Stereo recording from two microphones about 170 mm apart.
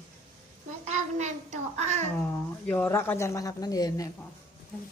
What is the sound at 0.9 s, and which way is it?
A child's voice, 40° right (ahead or behind).